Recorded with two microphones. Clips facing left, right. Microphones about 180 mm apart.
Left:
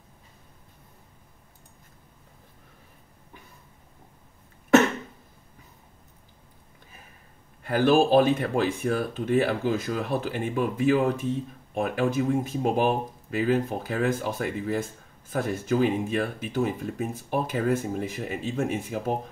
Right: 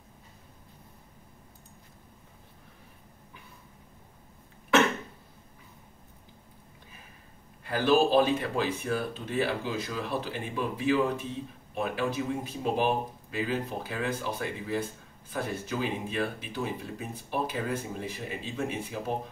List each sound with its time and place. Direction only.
7.6 s speech: 50° left (ahead or behind)